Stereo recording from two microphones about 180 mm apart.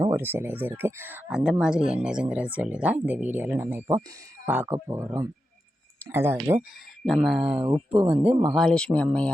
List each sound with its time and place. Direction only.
0.0 s speech: 15° right (ahead or behind)
7.1 s speech: centre (ahead or behind)
7.5 s speech: 30° right (ahead or behind)
8.1 s speech: 5° right (ahead or behind)
8.5 s speech: 5° left (ahead or behind)